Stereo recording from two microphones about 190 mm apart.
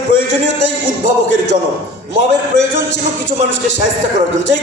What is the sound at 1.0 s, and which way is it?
A man's voice, 65° left (ahead or behind).